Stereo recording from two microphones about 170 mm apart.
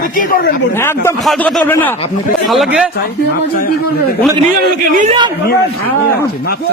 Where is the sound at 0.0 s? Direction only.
50° left (ahead or behind).